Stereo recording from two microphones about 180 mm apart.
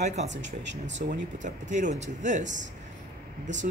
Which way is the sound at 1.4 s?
45° right (ahead or behind).